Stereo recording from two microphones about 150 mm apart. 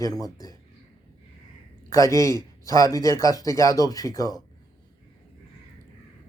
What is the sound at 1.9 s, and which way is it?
Speech, 20° left (ahead or behind).